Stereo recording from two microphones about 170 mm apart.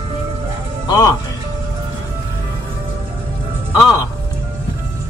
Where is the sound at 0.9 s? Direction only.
20° left (ahead or behind).